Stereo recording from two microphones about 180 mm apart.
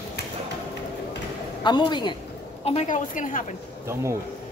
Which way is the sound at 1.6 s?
25° left (ahead or behind).